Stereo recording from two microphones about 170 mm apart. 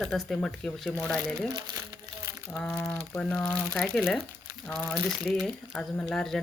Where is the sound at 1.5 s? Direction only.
20° right (ahead or behind).